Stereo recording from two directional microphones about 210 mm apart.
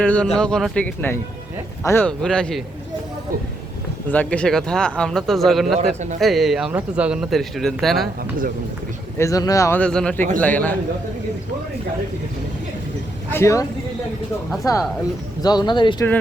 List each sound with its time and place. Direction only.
0.0 s speech: 5° left (ahead or behind)
4.1 s speech: 5° left (ahead or behind)
9.1 s speech: 15° left (ahead or behind)
13.3 s speech: 15° left (ahead or behind)